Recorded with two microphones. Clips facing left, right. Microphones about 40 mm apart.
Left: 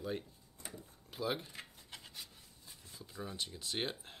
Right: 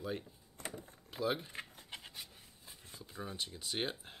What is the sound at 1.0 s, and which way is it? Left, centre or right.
Speech, centre.